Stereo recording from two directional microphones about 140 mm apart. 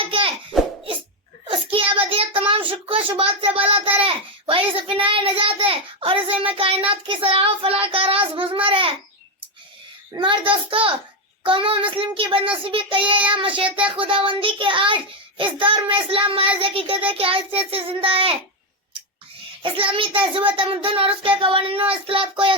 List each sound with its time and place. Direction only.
0.0 s a sound: 40° right (ahead or behind)
1.5 s child singing: 40° right (ahead or behind)
10.2 s child singing: 35° right (ahead or behind)
19.6 s child singing: 40° right (ahead or behind)